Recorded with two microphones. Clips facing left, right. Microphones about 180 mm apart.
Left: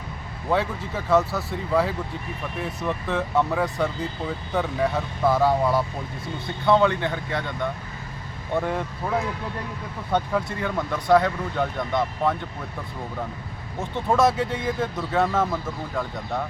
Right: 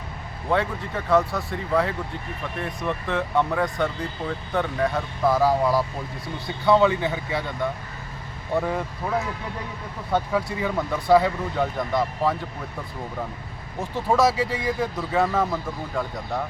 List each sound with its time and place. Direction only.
0.5 s speech: centre (ahead or behind)
13.9 s speech: centre (ahead or behind)